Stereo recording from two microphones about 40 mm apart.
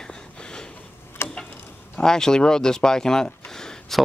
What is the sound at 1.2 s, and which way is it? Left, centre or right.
Tick-tock, left.